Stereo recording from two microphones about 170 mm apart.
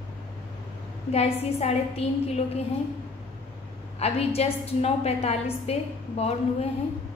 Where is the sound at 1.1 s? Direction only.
40° left (ahead or behind).